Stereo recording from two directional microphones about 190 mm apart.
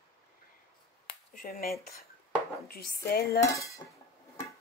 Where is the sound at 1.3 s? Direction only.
50° left (ahead or behind).